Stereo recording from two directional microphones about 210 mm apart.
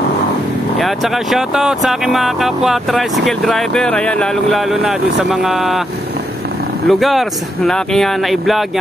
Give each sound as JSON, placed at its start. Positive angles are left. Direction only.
{"t": 0.7, "sound": "speech", "side_deg": 0}
{"t": 6.9, "sound": "speech", "side_deg": 0}